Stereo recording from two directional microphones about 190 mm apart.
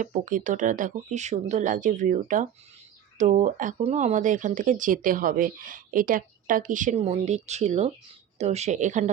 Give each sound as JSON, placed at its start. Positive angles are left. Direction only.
{"t": 0.0, "sound": "speech", "side_deg": -45}